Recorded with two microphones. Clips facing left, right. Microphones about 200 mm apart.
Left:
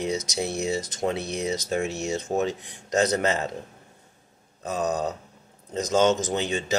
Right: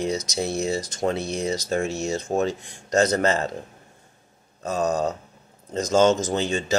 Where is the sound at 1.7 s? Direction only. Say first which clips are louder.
Right 2 dB; 20° left (ahead or behind).